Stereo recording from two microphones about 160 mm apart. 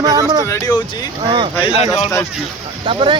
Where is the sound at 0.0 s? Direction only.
20° right (ahead or behind).